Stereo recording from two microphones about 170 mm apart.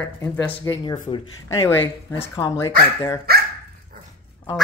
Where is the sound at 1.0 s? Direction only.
25° left (ahead or behind).